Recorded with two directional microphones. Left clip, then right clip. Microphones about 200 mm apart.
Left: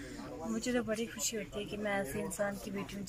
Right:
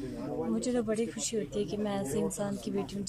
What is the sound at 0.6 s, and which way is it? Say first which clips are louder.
A woman's voice: right 2 dB; 20° right (ahead or behind).